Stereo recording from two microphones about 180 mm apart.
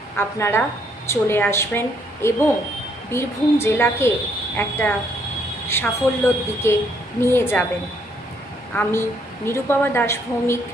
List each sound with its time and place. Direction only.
0.2 s a woman's voice: 15° left (ahead or behind)
8.7 s a woman's voice: 10° left (ahead or behind)